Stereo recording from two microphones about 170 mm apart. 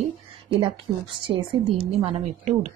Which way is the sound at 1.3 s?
30° right (ahead or behind).